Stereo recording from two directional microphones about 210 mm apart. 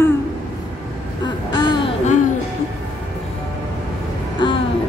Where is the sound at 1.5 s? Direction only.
20° left (ahead or behind).